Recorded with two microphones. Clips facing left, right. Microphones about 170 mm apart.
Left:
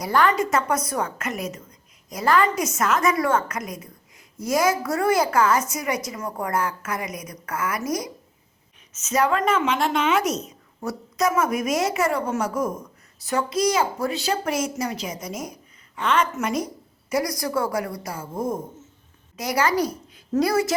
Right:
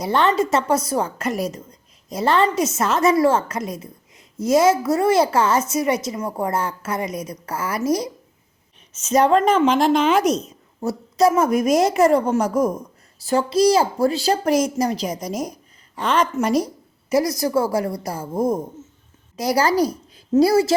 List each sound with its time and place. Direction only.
0.0 s a woman's voice: 25° right (ahead or behind)